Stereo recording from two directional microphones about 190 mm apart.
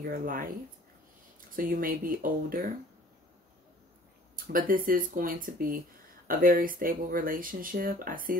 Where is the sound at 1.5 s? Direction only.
50° right (ahead or behind).